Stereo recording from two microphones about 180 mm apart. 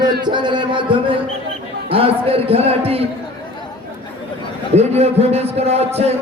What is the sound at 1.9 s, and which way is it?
A man's voice, 30° right (ahead or behind).